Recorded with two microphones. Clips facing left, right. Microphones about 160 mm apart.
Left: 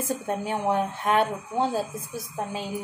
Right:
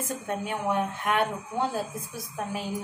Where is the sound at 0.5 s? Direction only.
30° left (ahead or behind).